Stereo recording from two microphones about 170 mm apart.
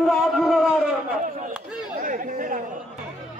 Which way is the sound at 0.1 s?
Centre (ahead or behind).